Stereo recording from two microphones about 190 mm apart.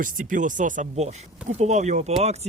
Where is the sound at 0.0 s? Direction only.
45° right (ahead or behind).